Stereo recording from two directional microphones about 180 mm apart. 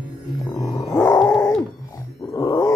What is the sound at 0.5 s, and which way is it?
Music, 20° left (ahead or behind).